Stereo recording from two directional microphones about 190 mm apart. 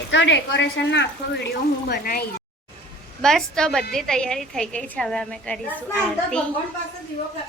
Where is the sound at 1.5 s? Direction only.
55° left (ahead or behind).